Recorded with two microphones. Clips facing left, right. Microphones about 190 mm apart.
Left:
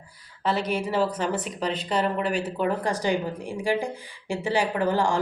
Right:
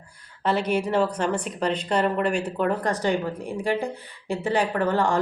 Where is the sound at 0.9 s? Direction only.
5° left (ahead or behind).